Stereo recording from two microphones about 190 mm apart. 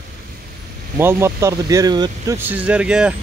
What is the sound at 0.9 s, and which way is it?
Speech, 15° right (ahead or behind).